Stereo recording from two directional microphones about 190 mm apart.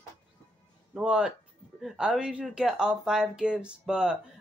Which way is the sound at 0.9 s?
5° right (ahead or behind).